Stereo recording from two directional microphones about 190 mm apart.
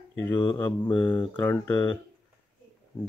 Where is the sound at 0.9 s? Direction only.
10° left (ahead or behind).